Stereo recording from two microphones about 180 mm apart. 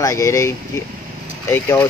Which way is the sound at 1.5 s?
15° left (ahead or behind).